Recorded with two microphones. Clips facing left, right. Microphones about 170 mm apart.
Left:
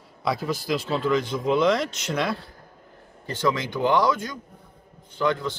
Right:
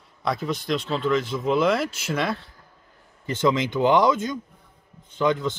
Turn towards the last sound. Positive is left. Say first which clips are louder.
# right 2 dB
turn(degrees=-20)  # may be behind; listen again after turning